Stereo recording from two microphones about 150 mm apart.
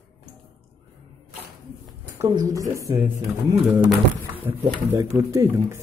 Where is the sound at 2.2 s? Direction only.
25° right (ahead or behind).